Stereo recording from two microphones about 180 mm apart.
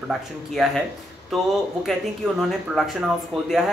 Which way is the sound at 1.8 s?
Centre (ahead or behind).